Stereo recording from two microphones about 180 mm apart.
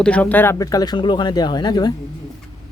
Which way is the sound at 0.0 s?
5° left (ahead or behind).